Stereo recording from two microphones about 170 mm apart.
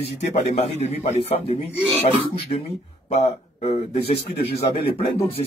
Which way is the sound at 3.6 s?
40° left (ahead or behind).